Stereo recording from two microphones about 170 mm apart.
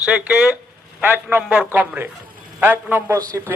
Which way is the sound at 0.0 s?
5° right (ahead or behind).